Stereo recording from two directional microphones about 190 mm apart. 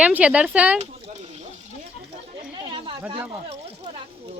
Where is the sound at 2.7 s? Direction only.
30° right (ahead or behind).